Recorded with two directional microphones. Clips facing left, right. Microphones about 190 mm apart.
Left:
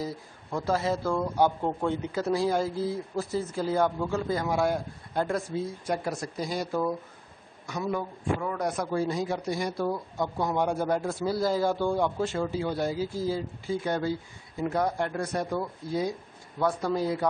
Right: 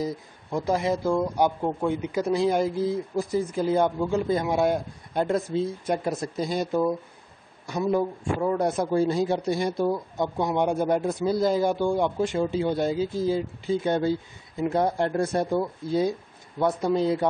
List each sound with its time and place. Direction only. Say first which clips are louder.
0.0 s speech: right 5 dB; 15° right (ahead or behind)